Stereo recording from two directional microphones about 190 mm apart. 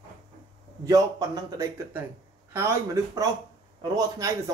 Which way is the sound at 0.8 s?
20° right (ahead or behind).